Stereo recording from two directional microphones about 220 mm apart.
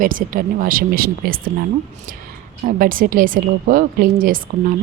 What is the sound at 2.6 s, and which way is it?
Speech, 40° right (ahead or behind).